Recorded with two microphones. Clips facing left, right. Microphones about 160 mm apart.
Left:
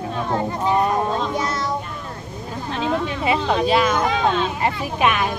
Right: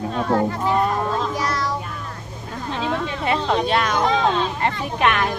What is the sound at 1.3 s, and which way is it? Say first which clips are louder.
Children playing: even; 20° left (ahead or behind).